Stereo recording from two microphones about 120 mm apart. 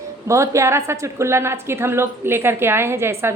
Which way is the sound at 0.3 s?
25° right (ahead or behind).